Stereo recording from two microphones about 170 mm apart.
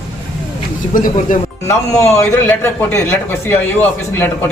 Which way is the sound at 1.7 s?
15° left (ahead or behind).